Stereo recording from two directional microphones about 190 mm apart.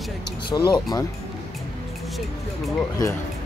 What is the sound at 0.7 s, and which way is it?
Speech, 20° left (ahead or behind).